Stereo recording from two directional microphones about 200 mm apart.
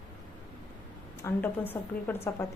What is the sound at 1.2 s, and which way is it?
Speech, 10° left (ahead or behind).